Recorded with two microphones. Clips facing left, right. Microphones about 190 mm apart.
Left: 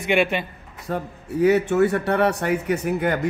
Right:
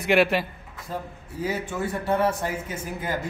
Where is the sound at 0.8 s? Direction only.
70° left (ahead or behind).